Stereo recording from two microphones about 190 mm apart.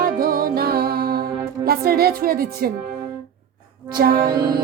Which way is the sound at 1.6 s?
55° right (ahead or behind).